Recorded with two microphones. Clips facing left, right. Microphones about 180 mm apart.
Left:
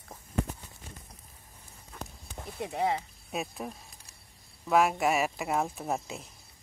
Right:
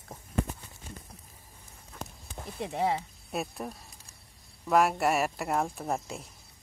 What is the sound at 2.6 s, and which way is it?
Speech, centre (ahead or behind).